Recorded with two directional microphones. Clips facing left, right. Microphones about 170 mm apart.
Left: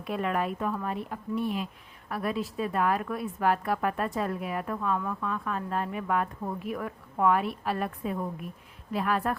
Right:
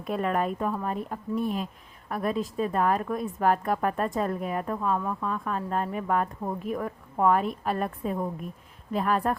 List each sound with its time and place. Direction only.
0.0 s a woman's voice: 40° right (ahead or behind)